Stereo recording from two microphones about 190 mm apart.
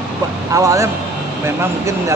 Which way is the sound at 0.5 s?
15° right (ahead or behind).